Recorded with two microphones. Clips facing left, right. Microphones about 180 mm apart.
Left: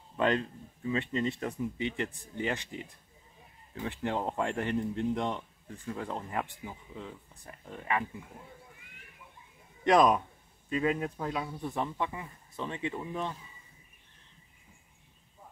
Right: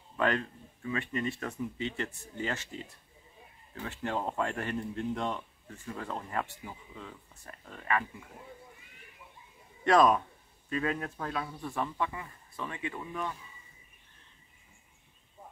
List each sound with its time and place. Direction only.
0.2 s speech: 20° left (ahead or behind)
9.8 s speech: 15° left (ahead or behind)